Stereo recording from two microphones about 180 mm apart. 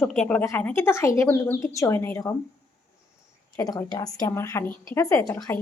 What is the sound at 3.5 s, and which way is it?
A woman's voice, 20° left (ahead or behind).